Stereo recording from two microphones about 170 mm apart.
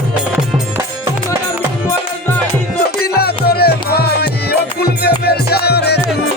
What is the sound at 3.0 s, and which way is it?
Music, 65° left (ahead or behind).